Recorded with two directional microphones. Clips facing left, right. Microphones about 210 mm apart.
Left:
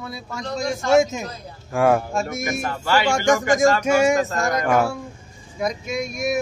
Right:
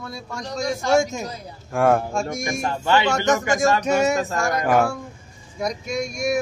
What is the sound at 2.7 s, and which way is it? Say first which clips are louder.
Speech: right 2 dB; 25° right (ahead or behind).